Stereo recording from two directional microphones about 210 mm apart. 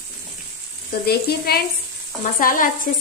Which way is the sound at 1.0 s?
50° left (ahead or behind).